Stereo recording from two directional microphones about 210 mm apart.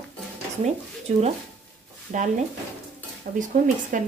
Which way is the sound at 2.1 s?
40° right (ahead or behind).